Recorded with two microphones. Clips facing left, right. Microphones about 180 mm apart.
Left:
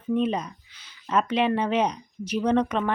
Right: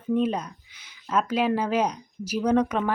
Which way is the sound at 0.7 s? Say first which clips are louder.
Even; 15° right (ahead or behind).